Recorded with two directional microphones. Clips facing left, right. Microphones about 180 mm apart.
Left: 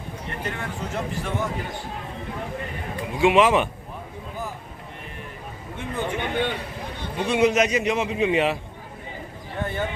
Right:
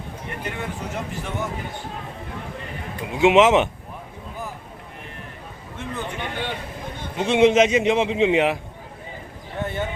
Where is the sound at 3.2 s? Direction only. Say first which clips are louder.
Right 3 dB; 20° right (ahead or behind).